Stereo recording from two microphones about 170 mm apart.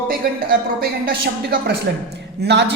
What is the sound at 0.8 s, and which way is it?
Speech, 65° right (ahead or behind).